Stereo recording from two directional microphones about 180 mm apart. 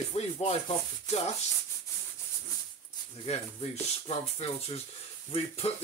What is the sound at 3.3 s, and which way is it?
Speech, 35° left (ahead or behind).